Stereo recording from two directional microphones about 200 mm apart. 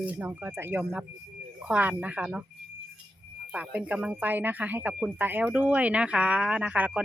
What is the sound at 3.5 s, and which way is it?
Speech, 5° right (ahead or behind).